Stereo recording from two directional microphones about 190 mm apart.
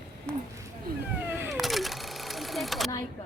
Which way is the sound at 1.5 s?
Centre (ahead or behind).